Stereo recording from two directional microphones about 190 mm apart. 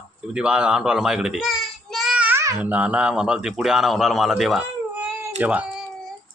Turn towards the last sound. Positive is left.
turn(degrees=-10)  # may be behind; listen again after turning